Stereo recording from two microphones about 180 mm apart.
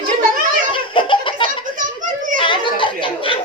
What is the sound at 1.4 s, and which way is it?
Children playing, 45° right (ahead or behind).